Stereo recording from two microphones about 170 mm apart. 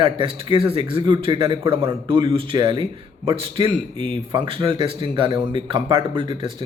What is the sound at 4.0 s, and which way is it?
Speech, 30° right (ahead or behind).